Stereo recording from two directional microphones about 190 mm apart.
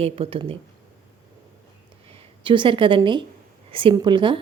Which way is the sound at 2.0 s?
25° right (ahead or behind).